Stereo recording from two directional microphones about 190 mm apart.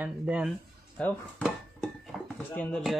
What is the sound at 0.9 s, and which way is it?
Dishes, 5° left (ahead or behind).